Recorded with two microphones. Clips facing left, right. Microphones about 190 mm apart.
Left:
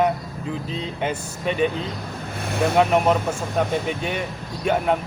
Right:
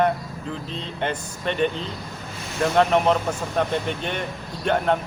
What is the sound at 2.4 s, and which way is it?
Vehicle, 60° left (ahead or behind).